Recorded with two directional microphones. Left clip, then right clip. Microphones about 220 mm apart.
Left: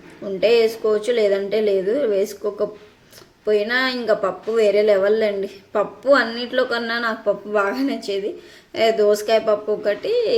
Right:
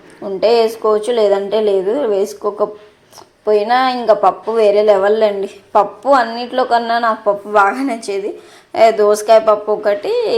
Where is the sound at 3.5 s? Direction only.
5° left (ahead or behind).